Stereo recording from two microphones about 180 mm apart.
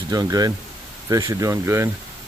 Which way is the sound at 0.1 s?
20° right (ahead or behind).